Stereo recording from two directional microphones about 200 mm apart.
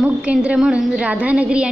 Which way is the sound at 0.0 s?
5° right (ahead or behind).